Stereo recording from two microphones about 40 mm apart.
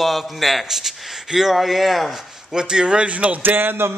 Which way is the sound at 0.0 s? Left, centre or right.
Centre.